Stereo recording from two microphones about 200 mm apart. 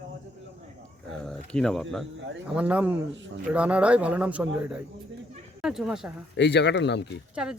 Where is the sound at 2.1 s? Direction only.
65° right (ahead or behind).